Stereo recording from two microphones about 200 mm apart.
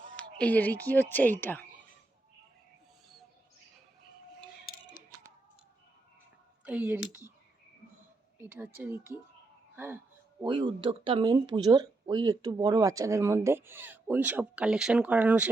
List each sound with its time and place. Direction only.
0.0 s a woman's voice: 5° left (ahead or behind)
6.7 s speech: 10° right (ahead or behind)
8.4 s speech: 10° right (ahead or behind)
10.4 s speech: 25° right (ahead or behind); by 15.4 s 5° right (ahead or behind)